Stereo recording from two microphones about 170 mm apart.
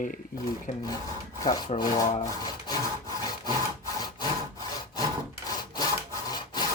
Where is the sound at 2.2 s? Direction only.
25° left (ahead or behind).